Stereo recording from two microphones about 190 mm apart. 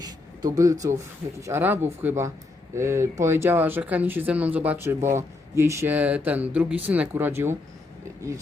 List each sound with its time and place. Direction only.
0.0 s speech: 20° right (ahead or behind)